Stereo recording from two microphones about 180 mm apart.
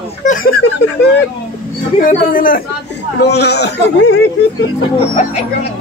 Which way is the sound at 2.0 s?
50° left (ahead or behind).